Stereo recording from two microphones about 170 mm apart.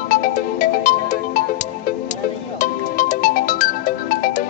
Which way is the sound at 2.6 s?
50° left (ahead or behind).